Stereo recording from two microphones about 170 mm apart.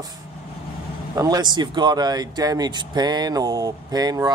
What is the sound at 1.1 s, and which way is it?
Speech, 20° right (ahead or behind).